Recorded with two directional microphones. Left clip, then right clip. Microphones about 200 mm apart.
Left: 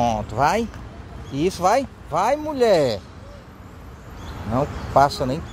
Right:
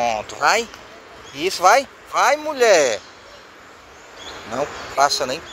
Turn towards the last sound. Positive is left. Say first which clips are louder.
# right 1 dB
turn(degrees=10)  # may be behind; listen again after turning